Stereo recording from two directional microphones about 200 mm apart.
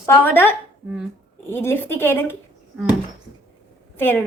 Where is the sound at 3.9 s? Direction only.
10° left (ahead or behind).